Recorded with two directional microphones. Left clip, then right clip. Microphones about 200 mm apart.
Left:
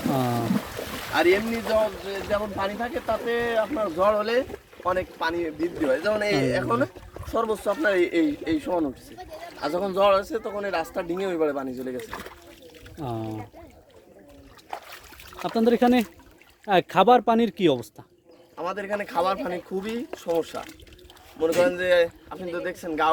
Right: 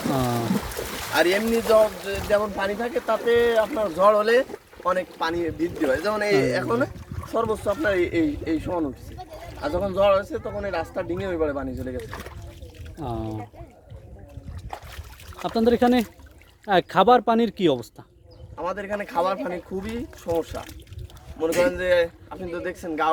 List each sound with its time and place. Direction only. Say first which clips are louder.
0.1 s speech: right 1 dB; centre (ahead or behind)
0.4 s boat: right 1 dB; 45° right (ahead or behind)
3.2 s speech: right 7 dB; 45° right (ahead or behind); by 8.9 s 20° left (ahead or behind)
9.1 s speech: even; 35° left (ahead or behind)
11.9 s speech: even; 10° left (ahead or behind)
13.0 s speech: right 1 dB; 5° right (ahead or behind)
15.4 s speech: right 1 dB; centre (ahead or behind)
18.5 s speech: right 1 dB; 25° left (ahead or behind)